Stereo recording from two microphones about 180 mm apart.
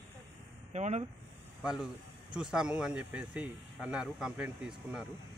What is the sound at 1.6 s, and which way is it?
Speech, 5° right (ahead or behind).